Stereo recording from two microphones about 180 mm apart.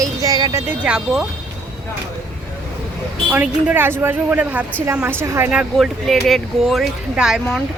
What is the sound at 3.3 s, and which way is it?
A woman's voice, 10° right (ahead or behind).